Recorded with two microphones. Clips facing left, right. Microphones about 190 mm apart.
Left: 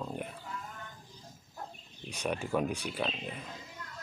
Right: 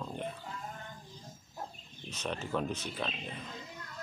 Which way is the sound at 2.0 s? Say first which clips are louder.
Left 3 dB; 10° left (ahead or behind).